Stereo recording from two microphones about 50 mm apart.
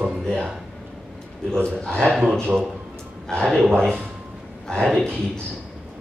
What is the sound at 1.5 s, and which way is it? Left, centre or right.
Speech, centre.